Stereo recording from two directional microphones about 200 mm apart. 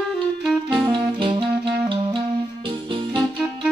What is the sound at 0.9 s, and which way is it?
Music, 25° right (ahead or behind).